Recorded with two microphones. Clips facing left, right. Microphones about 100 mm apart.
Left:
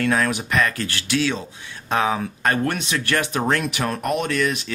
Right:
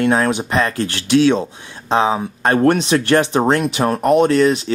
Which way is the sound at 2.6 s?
35° right (ahead or behind).